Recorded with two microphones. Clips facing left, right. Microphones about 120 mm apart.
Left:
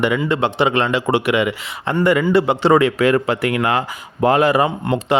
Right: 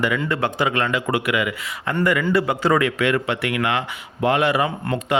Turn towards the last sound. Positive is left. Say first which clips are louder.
# left 4 dB
turn(degrees=40)  # may be behind; listen again after turning